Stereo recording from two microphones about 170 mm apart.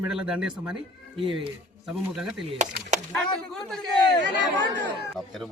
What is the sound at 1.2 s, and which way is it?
Speech, 30° right (ahead or behind).